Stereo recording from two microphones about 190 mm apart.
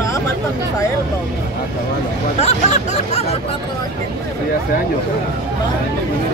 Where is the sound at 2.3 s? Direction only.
35° left (ahead or behind).